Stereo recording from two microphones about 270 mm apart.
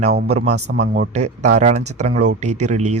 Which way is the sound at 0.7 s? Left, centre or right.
Right.